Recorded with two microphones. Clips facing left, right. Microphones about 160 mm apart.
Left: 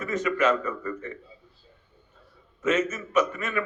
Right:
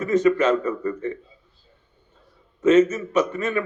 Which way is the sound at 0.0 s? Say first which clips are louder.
Right 6 dB; 35° right (ahead or behind).